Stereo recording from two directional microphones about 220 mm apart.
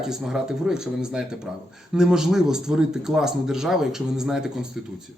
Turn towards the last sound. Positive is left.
turn(degrees=0)  # may be behind; listen again after turning